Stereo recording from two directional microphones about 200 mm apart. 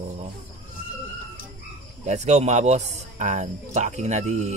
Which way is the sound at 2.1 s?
35° right (ahead or behind).